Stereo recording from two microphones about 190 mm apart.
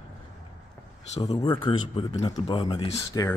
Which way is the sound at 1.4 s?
25° left (ahead or behind).